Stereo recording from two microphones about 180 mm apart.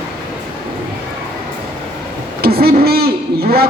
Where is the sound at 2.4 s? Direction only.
60° right (ahead or behind).